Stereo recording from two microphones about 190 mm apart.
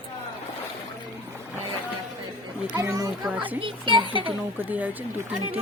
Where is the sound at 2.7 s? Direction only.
15° right (ahead or behind).